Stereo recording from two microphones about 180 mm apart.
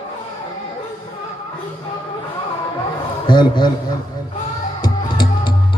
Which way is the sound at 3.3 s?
25° left (ahead or behind).